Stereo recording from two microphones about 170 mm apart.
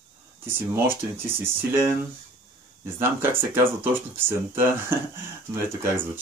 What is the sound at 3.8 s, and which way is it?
Speech, 15° right (ahead or behind).